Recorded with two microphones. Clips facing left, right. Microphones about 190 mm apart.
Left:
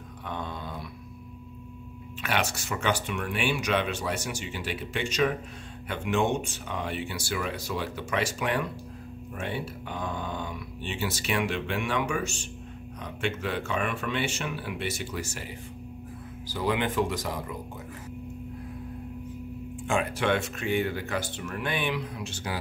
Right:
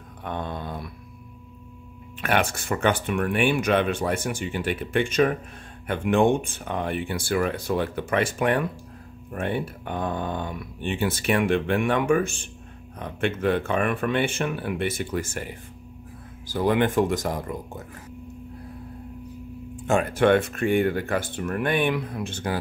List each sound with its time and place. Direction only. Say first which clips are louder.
0.2 s a sound: right 5 dB; 55° right (ahead or behind)
2.2 s speech: right 6 dB; 55° right (ahead or behind)
16.5 s speech: right 6 dB; 50° right (ahead or behind)
19.8 s speech: right 7 dB; 45° right (ahead or behind)